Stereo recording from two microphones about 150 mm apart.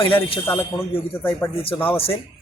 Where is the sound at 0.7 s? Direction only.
25° left (ahead or behind).